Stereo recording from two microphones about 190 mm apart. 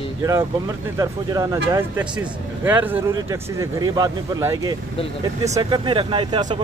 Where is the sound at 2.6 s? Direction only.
10° right (ahead or behind).